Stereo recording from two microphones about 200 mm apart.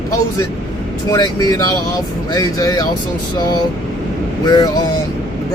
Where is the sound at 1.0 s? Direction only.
20° left (ahead or behind).